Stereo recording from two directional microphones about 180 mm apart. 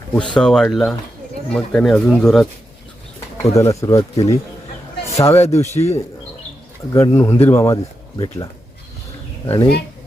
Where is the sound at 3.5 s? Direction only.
15° left (ahead or behind).